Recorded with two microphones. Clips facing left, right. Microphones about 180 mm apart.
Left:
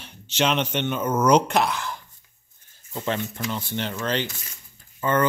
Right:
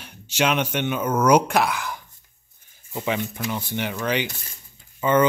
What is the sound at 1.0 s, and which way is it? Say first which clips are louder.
Speech: right 1 dB; 5° left (ahead or behind).